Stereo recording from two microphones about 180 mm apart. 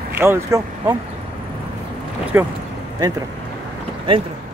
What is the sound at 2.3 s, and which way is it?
Speech, 10° right (ahead or behind).